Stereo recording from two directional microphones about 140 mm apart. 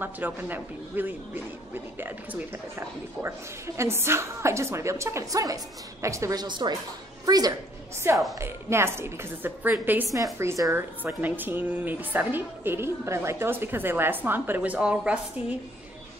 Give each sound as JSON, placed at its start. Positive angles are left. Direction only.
{"t": 0.0, "sound": "a woman's voice", "side_deg": -15}
{"t": 6.4, "sound": "a woman's voice", "side_deg": -30}